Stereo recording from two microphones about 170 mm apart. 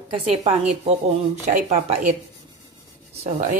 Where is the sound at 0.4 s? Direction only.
40° right (ahead or behind).